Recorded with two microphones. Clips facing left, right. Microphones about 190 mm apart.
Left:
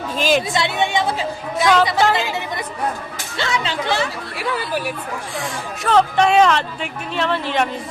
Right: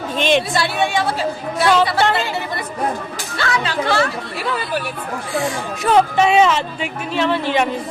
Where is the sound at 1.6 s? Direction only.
5° right (ahead or behind).